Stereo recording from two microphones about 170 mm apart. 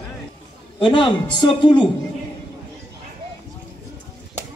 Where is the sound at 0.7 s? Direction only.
30° left (ahead or behind).